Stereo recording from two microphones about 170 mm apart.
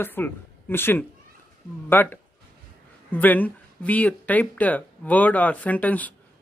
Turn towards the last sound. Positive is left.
turn(degrees=10)  # may be behind; listen again after turning